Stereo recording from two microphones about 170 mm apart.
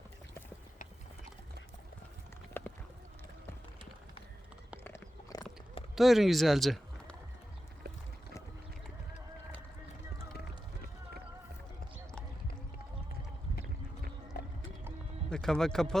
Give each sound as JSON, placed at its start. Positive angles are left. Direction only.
{"t": 2.5, "sound": "clip-clop", "side_deg": 10}
{"t": 4.8, "sound": "biting", "side_deg": 20}
{"t": 6.0, "sound": "speech", "side_deg": 0}
{"t": 14.3, "sound": "run", "side_deg": 60}
{"t": 15.3, "sound": "speech", "side_deg": 5}